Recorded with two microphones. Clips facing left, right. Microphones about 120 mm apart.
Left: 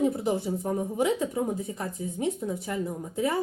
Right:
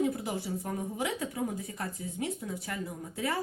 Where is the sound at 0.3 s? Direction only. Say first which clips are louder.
Left 7 dB; 25° left (ahead or behind).